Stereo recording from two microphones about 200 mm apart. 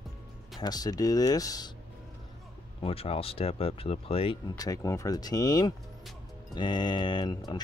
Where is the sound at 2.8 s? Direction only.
30° left (ahead or behind).